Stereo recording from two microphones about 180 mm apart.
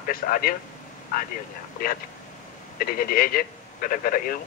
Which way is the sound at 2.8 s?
55° left (ahead or behind).